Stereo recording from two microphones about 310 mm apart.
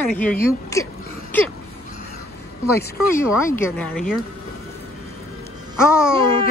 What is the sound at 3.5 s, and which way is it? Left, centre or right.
Speech, centre.